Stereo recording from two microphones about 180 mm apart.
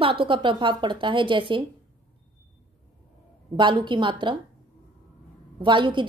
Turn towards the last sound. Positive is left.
turn(degrees=-25)  # may be behind; listen again after turning